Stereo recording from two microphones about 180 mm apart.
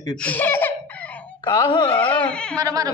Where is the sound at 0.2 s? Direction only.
10° left (ahead or behind).